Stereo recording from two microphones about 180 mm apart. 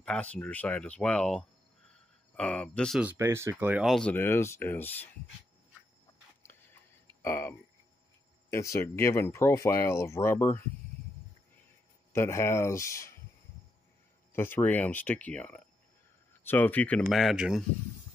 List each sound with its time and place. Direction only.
0.0 s speech: 5° left (ahead or behind)
3.0 s speech: 10° right (ahead or behind)
3.9 s speech: 10° left (ahead or behind)
7.2 s speech: 15° left (ahead or behind)
12.1 s speech: 15° left (ahead or behind)
14.3 s speech: 10° left (ahead or behind)